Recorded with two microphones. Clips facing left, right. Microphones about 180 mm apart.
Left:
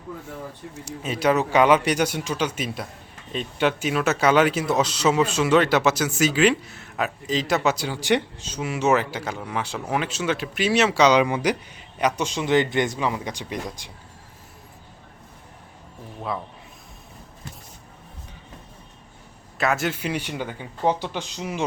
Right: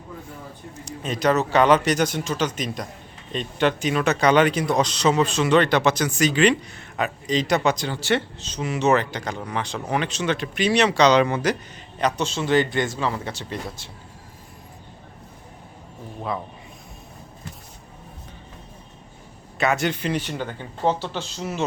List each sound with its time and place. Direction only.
0.9 s speech: 5° left (ahead or behind)
19.5 s speech: centre (ahead or behind)